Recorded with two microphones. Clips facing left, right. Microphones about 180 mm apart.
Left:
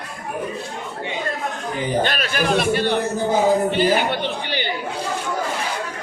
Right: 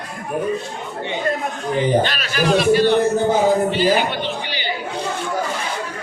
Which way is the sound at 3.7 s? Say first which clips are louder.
Right 1 dB; 55° left (ahead or behind).